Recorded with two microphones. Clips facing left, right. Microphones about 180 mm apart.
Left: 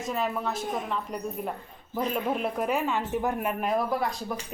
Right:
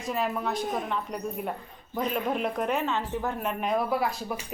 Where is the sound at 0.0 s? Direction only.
Centre (ahead or behind).